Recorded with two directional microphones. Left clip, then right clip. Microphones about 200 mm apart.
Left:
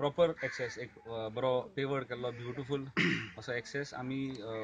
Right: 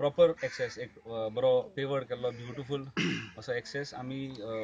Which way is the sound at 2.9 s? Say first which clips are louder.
Left 3 dB; 20° left (ahead or behind).